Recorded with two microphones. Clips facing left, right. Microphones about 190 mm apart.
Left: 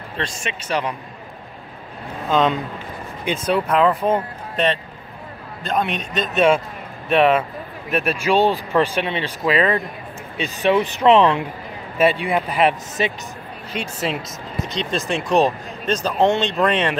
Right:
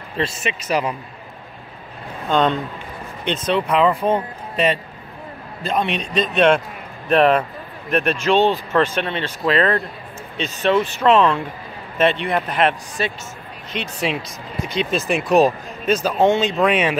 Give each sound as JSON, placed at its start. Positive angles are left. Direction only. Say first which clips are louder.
{"t": 0.2, "sound": "speech", "louder": "right 4 dB", "side_deg": -5}
{"t": 2.2, "sound": "speech", "louder": "even", "side_deg": 5}
{"t": 14.0, "sound": "speech", "louder": "right 1 dB", "side_deg": 0}